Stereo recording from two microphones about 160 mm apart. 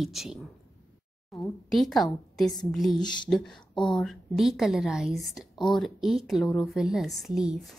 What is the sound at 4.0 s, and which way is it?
A woman's voice, centre (ahead or behind).